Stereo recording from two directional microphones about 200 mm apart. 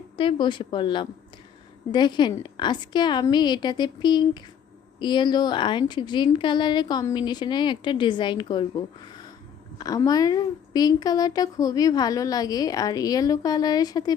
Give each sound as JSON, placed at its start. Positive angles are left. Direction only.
{"t": 0.2, "sound": "a woman's voice", "side_deg": 25}